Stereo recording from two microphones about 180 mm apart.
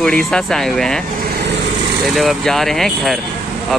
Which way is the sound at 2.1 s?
Centre (ahead or behind).